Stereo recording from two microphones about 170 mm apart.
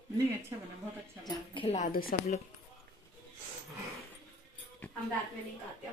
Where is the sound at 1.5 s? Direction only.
35° left (ahead or behind).